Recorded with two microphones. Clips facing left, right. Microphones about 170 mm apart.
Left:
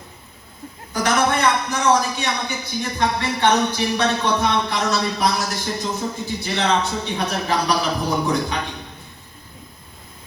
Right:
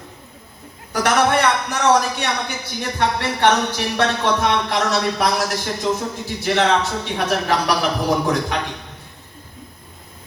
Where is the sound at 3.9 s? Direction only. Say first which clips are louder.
Right 3 dB; 75° right (ahead or behind).